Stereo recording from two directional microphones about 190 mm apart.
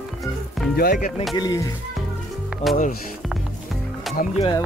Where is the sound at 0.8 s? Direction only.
50° left (ahead or behind).